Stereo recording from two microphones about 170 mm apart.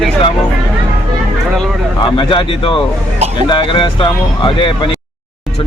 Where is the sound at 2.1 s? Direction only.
30° left (ahead or behind).